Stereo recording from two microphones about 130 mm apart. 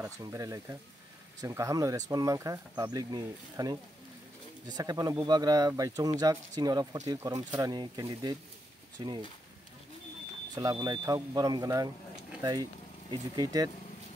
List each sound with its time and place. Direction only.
0.2 s speech: 25° right (ahead or behind)
10.5 s speech: 30° right (ahead or behind)